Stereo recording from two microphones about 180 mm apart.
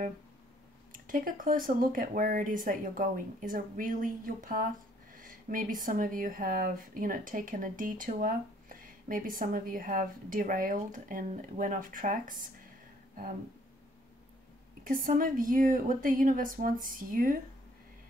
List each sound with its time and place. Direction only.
1.0 s a woman's voice: 50° right (ahead or behind)
14.8 s a woman's voice: 50° right (ahead or behind)